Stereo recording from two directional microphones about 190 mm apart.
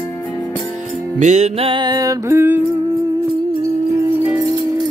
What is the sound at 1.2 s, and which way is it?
Music, 40° right (ahead or behind).